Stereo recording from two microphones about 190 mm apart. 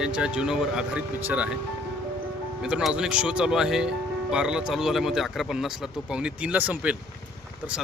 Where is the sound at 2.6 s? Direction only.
5° right (ahead or behind).